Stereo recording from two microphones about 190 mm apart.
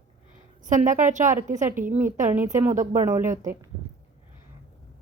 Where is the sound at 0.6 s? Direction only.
45° right (ahead or behind).